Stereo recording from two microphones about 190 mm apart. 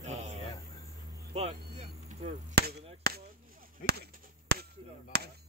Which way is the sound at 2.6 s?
55° right (ahead or behind).